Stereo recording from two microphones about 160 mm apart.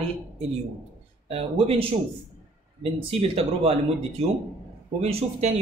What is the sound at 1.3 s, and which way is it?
Speech, 40° right (ahead or behind).